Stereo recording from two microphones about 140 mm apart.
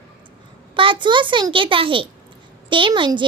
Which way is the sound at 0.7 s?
35° right (ahead or behind).